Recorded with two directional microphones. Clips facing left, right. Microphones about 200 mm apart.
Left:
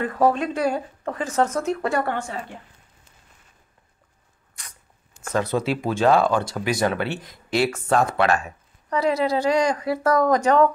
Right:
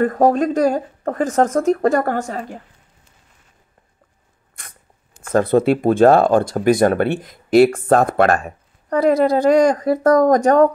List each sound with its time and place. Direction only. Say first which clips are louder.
0.0 s speech: right 6 dB; 45° right (ahead or behind)
4.6 s a sound: right 2 dB; 55° right (ahead or behind)
5.3 s speech: right 8 dB; 55° right (ahead or behind)